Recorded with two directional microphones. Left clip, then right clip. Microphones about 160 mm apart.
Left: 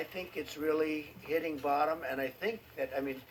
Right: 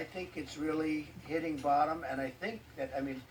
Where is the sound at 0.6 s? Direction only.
35° left (ahead or behind).